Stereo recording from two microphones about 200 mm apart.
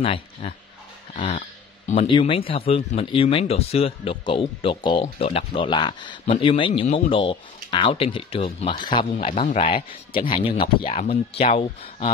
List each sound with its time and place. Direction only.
0.0 s speech: 30° left (ahead or behind)
1.1 s a sound: 35° left (ahead or behind)
1.9 s speech: 25° left (ahead or behind)